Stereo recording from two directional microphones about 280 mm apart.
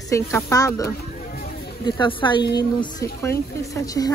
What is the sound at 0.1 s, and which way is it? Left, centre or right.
Speech, centre.